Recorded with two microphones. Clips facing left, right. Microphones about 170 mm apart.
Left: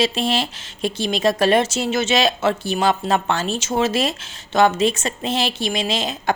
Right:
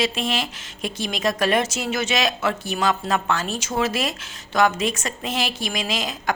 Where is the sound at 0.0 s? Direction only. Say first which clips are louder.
Left 4 dB; 30° left (ahead or behind).